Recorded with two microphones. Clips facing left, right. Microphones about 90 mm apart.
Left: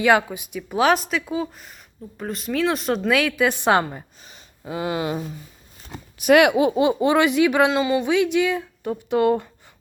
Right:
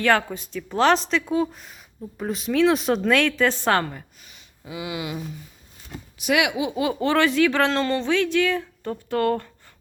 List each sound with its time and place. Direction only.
0.0 s a woman's voice: 10° left (ahead or behind)
4.3 s speech: 45° left (ahead or behind)
6.7 s speech: 20° left (ahead or behind)